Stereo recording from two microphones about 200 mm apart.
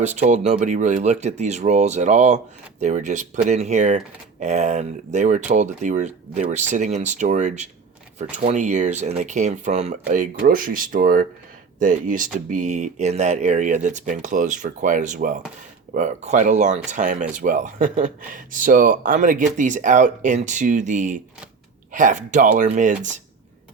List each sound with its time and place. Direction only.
0.0 s speech: 35° right (ahead or behind)